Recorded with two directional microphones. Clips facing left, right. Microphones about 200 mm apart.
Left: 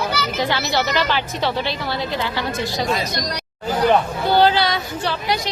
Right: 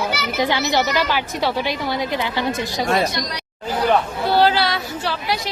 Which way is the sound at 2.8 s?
65° right (ahead or behind).